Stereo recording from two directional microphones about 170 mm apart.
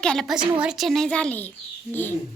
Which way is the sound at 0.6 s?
5° right (ahead or behind).